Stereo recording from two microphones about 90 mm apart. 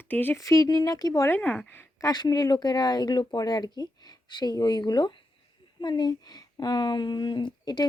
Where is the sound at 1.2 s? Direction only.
20° left (ahead or behind).